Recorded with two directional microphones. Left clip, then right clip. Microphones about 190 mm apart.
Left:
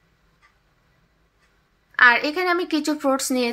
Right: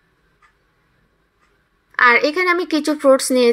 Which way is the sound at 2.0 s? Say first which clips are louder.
Right 3 dB; 15° right (ahead or behind).